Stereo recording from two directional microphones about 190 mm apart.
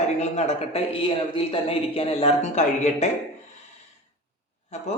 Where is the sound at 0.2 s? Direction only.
35° left (ahead or behind).